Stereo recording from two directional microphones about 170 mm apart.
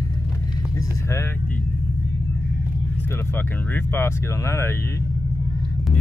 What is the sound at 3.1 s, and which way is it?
Speech, 15° left (ahead or behind).